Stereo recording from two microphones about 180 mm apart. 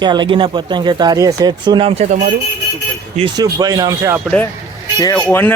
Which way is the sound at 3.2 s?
25° right (ahead or behind).